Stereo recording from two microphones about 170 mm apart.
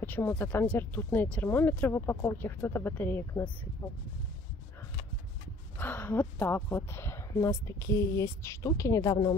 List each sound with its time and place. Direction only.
0.0 s a woman's voice: 10° left (ahead or behind)
5.8 s a woman's voice: 10° left (ahead or behind)